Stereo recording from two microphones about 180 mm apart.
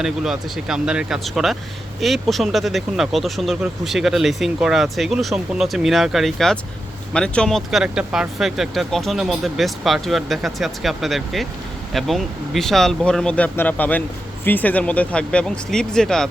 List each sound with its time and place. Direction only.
0.0 s speech: 5° right (ahead or behind)